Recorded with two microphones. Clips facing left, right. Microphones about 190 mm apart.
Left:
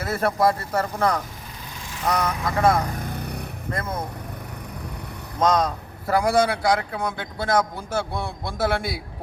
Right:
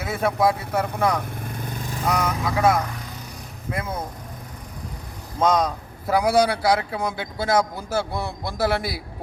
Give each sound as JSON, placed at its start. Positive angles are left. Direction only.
{"t": 0.0, "sound": "speech", "side_deg": 0}
{"t": 3.0, "sound": "vehicle", "side_deg": 60}
{"t": 5.4, "sound": "speech", "side_deg": 0}